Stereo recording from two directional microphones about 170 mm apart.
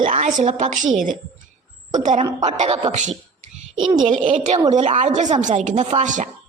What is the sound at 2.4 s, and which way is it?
Speech, 40° right (ahead or behind).